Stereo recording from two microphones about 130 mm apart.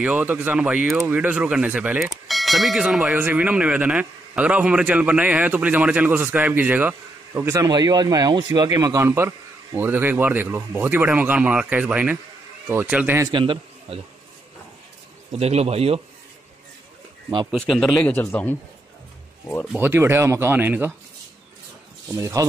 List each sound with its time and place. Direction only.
0.0 s speech: 10° right (ahead or behind)
13.3 s a man's voice: 40° right (ahead or behind)
15.3 s a man's voice: 55° right (ahead or behind)
17.5 s speech: centre (ahead or behind)
18.1 s a man's voice: 15° left (ahead or behind)
19.8 s speech: 20° right (ahead or behind)
22.1 s speech: 25° right (ahead or behind)